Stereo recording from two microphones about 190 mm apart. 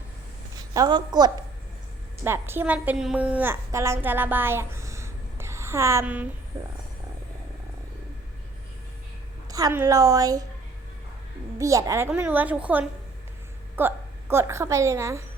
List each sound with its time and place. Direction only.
0.7 s a woman's voice: 20° right (ahead or behind)
2.2 s a woman's voice: 10° right (ahead or behind)
9.5 s a woman's voice: 20° right (ahead or behind)
11.5 s a woman's voice: 15° right (ahead or behind)